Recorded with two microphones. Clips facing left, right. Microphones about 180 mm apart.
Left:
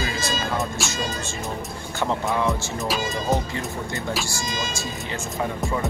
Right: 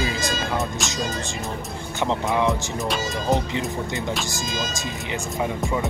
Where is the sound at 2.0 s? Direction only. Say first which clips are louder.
Right 1 dB; 20° right (ahead or behind).